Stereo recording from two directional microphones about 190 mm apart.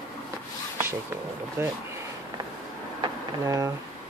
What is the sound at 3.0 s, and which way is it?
Speech, 20° right (ahead or behind).